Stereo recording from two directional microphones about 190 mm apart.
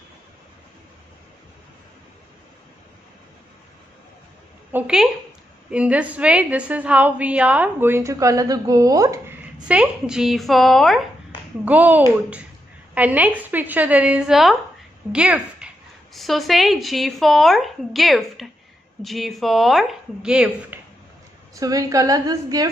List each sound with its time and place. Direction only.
4.7 s a woman's voice: 5° right (ahead or behind)
9.7 s a woman's voice: 5° right (ahead or behind)
21.5 s a woman's voice: 20° right (ahead or behind)